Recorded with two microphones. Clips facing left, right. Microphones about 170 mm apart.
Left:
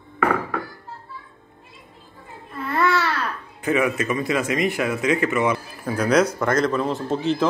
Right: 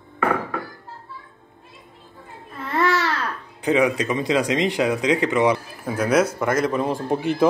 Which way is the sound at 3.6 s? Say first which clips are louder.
Right 2 dB; 15° right (ahead or behind).